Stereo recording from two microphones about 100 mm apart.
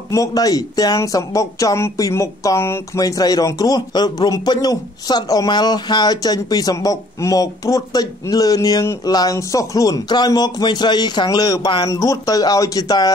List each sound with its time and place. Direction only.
0.1 s speech: 35° left (ahead or behind)